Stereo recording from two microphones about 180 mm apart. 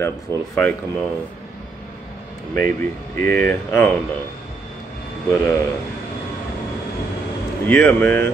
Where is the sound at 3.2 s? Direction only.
10° left (ahead or behind).